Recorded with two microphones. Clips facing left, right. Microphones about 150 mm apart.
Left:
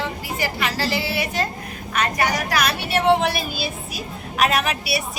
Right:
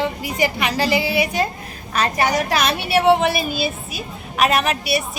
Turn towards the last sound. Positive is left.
turn(degrees=0)  # may be behind; listen again after turning